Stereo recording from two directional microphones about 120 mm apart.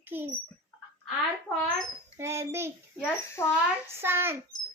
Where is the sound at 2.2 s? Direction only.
20° right (ahead or behind).